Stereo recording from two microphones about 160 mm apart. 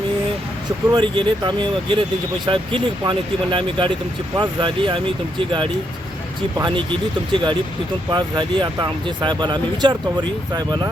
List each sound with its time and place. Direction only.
0.9 s speech: 25° right (ahead or behind)
6.6 s speech: 30° right (ahead or behind)
8.1 s speech: 30° right (ahead or behind)